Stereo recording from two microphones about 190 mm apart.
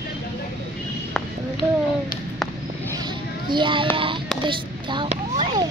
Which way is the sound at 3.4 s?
25° right (ahead or behind).